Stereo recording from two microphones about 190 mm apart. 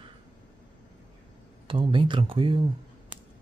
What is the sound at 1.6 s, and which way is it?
Speech, 25° right (ahead or behind).